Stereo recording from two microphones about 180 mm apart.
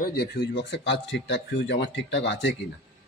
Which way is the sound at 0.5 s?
75° left (ahead or behind).